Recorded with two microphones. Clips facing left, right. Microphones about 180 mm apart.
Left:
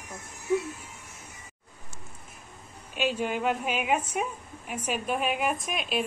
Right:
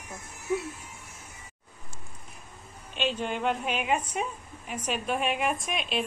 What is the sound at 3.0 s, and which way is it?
Speech, 10° left (ahead or behind).